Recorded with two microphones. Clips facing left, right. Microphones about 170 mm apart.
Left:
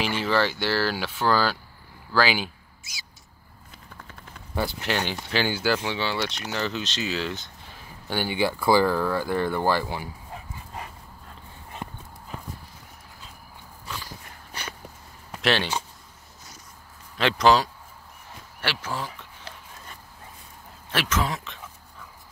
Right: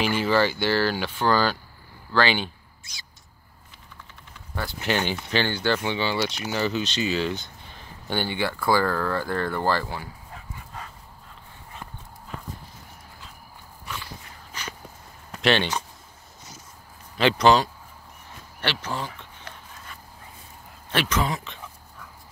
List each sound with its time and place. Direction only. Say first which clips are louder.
0.0 s speech: right 2 dB; centre (ahead or behind)
4.7 s speech: right 2 dB; centre (ahead or behind); by 10.9 s 20° left (ahead or behind)
11.8 s clip-clop: left 5 dB; 20° left (ahead or behind)
15.4 s speech: right 2 dB; centre (ahead or behind)
17.2 s speech: right 1 dB; centre (ahead or behind)
20.9 s speech: right 2 dB; centre (ahead or behind)